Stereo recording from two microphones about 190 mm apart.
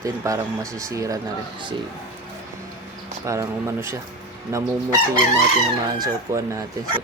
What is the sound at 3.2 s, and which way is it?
Speech, 15° right (ahead or behind).